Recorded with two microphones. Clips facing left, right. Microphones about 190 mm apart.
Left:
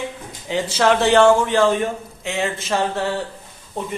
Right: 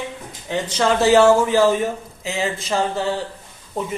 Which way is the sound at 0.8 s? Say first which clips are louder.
Even; centre (ahead or behind).